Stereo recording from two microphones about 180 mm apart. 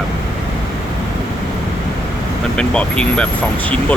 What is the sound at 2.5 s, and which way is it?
Speech, 5° left (ahead or behind).